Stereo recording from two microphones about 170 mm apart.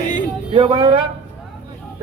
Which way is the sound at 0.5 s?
30° right (ahead or behind).